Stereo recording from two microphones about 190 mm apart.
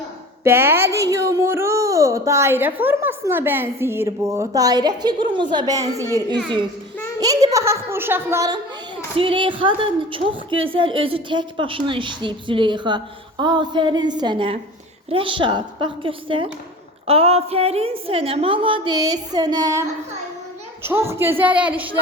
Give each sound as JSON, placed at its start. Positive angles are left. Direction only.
{"t": 0.4, "sound": "speech", "side_deg": -10}
{"t": 7.2, "sound": "a woman's voice", "side_deg": -20}